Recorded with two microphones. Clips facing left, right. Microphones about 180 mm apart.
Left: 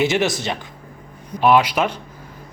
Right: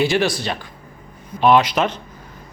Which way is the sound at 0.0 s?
20° left (ahead or behind).